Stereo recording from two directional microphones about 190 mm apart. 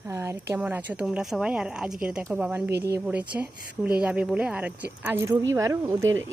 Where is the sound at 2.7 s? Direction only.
60° right (ahead or behind).